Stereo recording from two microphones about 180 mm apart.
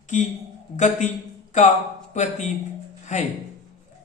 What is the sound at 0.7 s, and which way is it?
Speech, 40° left (ahead or behind).